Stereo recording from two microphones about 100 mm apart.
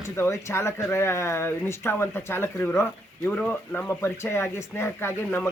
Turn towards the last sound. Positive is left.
turn(degrees=20)  # may be behind; listen again after turning